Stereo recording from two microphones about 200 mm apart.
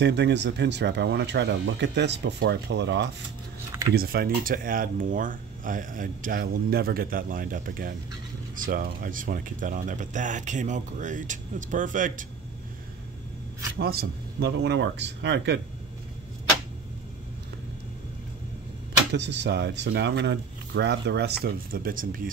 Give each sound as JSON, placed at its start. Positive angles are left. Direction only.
{"t": 0.0, "sound": "speech", "side_deg": -60}
{"t": 3.9, "sound": "speech", "side_deg": -50}
{"t": 13.7, "sound": "speech", "side_deg": -50}
{"t": 19.1, "sound": "speech", "side_deg": -60}